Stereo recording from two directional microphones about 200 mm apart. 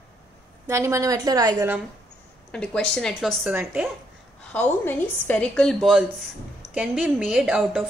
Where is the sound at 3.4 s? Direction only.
10° right (ahead or behind).